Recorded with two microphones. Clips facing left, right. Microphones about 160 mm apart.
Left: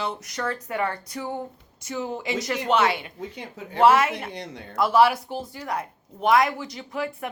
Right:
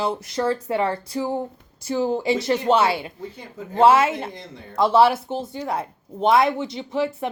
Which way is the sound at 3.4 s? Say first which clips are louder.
Right 2 dB; 80° left.